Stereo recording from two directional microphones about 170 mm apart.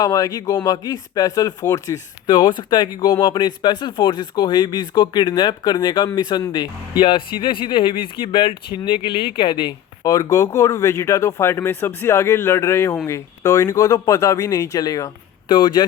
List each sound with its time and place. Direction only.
0.0 s speech: 20° left (ahead or behind)